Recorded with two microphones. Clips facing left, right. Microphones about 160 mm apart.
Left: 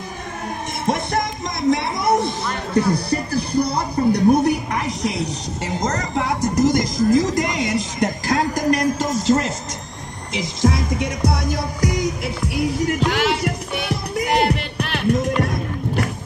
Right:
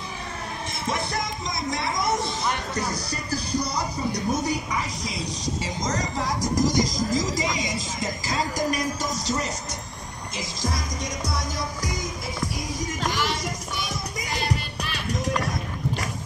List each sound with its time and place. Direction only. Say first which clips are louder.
0.8 s music: left 7 dB; 55° left (ahead or behind)
2.7 s speech: left 10 dB; 55° left (ahead or behind)
7.2 s music: left 7 dB; 60° left (ahead or behind)
10.6 s music: left 11 dB; 60° left (ahead or behind)